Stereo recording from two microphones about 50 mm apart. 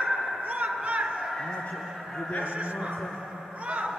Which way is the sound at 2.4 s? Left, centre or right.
Right.